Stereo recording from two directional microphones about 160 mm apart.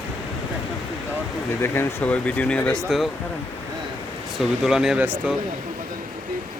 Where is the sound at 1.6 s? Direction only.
15° left (ahead or behind).